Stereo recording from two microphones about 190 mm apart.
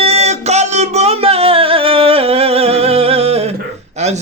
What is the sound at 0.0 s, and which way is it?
Music, 35° right (ahead or behind).